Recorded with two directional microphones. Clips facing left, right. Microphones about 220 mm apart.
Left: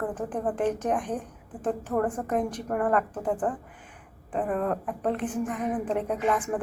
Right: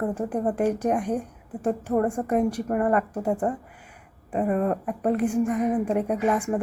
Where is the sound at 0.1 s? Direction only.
10° right (ahead or behind).